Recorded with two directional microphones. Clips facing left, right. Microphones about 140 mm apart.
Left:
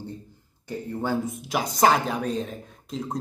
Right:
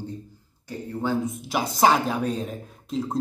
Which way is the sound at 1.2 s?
Centre (ahead or behind).